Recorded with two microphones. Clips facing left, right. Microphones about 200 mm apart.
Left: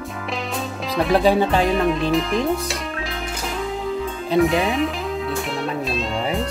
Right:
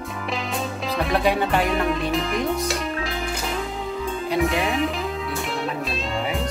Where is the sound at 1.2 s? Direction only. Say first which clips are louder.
Left 2 dB; 30° left (ahead or behind).